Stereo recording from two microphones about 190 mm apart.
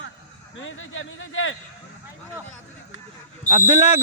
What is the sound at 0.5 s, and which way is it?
Speech, 90° left.